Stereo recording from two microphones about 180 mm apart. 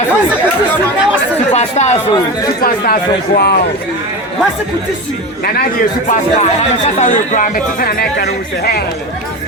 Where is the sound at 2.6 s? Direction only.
55° left (ahead or behind).